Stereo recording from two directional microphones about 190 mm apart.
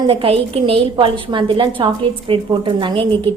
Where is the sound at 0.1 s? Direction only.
30° right (ahead or behind).